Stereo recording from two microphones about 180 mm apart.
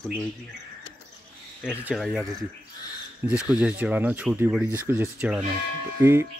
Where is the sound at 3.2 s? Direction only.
5° right (ahead or behind).